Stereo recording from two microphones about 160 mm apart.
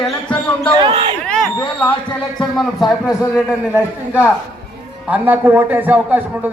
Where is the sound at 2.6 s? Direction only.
Centre (ahead or behind).